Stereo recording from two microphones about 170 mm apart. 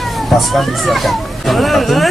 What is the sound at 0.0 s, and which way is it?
Speech, centre (ahead or behind).